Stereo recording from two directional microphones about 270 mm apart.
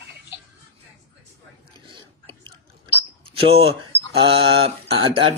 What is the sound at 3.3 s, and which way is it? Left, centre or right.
Speech, right.